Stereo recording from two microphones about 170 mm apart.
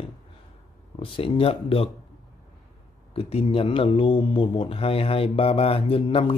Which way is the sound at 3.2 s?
35° left (ahead or behind).